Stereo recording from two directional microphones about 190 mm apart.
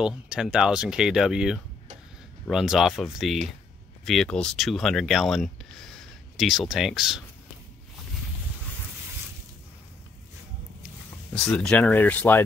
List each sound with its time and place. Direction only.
0.0 s speech: 5° right (ahead or behind)
11.5 s speech: 5° left (ahead or behind)